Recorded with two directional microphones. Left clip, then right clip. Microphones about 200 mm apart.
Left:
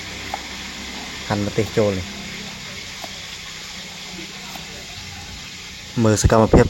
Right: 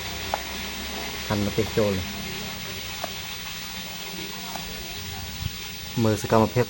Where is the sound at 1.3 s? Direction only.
20° left (ahead or behind).